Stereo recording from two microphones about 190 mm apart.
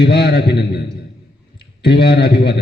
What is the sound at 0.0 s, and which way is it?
A man's voice, 65° left (ahead or behind).